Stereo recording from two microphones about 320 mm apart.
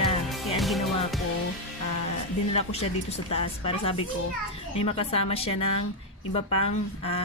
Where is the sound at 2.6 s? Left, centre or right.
Centre.